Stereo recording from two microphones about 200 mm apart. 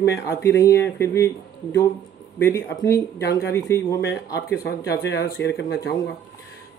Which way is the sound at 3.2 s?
55° left (ahead or behind).